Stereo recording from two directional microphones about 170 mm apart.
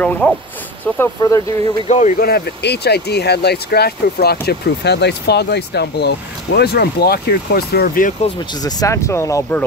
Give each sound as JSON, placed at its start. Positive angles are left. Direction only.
{"t": 0.0, "sound": "speech", "side_deg": 10}
{"t": 1.9, "sound": "speech", "side_deg": 45}
{"t": 2.1, "sound": "speech", "side_deg": 65}
{"t": 8.5, "sound": "speech", "side_deg": 20}